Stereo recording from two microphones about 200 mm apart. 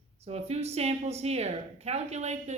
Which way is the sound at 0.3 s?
30° right (ahead or behind).